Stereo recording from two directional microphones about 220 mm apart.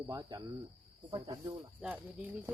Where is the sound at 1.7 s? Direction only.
5° right (ahead or behind).